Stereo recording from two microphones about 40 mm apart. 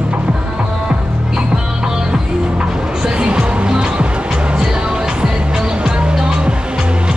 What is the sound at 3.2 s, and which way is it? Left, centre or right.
Music, right.